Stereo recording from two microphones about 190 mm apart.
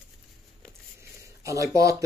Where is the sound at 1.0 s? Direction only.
15° right (ahead or behind).